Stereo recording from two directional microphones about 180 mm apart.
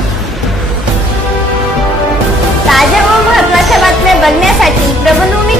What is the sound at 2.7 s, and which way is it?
Music, centre (ahead or behind).